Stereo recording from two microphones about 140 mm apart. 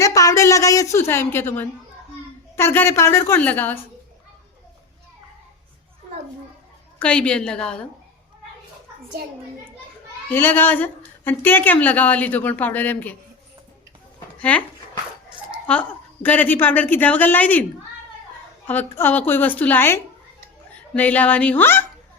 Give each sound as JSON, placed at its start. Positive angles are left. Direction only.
{"t": 0.0, "sound": "a woman's voice", "side_deg": 25}
{"t": 7.0, "sound": "a woman's voice", "side_deg": 10}
{"t": 10.2, "sound": "a woman's voice", "side_deg": 15}
{"t": 14.3, "sound": "speech", "side_deg": 10}
{"t": 15.6, "sound": "a woman's voice", "side_deg": 10}